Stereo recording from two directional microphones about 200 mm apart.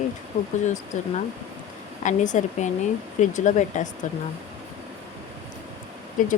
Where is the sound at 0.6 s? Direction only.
35° left (ahead or behind).